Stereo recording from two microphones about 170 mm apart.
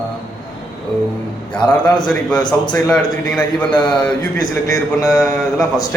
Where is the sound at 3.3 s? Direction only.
10° left (ahead or behind).